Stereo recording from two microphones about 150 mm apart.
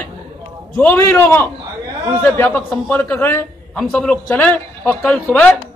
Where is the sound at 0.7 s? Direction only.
10° left (ahead or behind).